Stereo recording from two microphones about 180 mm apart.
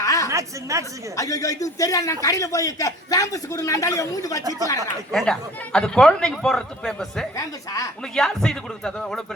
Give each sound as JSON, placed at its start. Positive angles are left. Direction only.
{"t": 0.0, "sound": "a sound", "side_deg": 20}
{"t": 0.3, "sound": "a woman's voice", "side_deg": -15}
{"t": 1.1, "sound": "a man's voice", "side_deg": 20}
{"t": 5.1, "sound": "speech", "side_deg": 5}
{"t": 7.3, "sound": "a man's voice", "side_deg": 20}
{"t": 8.1, "sound": "speech", "side_deg": 5}